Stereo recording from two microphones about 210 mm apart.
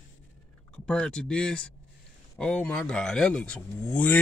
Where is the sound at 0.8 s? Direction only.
5° left (ahead or behind).